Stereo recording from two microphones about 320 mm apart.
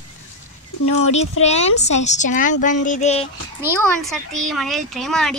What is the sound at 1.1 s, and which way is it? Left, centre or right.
A woman's voice, left.